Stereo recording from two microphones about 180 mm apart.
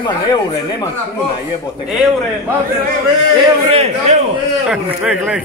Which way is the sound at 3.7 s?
35° right (ahead or behind).